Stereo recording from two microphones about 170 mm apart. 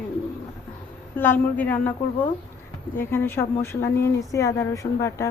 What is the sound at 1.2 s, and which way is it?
Speech, 10° left (ahead or behind).